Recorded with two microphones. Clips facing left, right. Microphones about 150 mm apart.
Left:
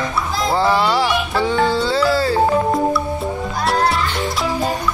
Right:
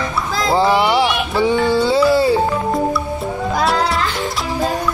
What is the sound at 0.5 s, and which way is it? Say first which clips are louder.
Music: right 3 dB; 20° right (ahead or behind).